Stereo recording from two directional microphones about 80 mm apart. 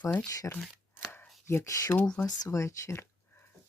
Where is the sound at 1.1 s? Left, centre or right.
Left.